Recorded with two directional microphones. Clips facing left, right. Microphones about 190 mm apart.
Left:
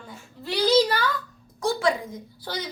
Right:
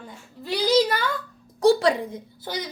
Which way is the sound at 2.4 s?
15° right (ahead or behind).